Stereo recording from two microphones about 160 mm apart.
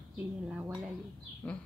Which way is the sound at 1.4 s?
10° left (ahead or behind).